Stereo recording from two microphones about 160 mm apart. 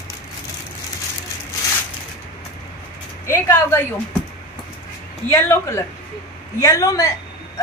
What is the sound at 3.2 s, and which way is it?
Speech, 15° left (ahead or behind).